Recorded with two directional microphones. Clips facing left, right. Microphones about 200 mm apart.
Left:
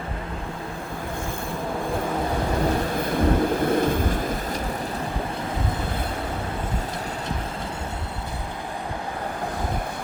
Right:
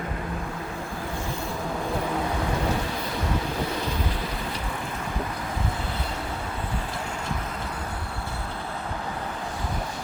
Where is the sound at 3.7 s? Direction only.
50° left (ahead or behind).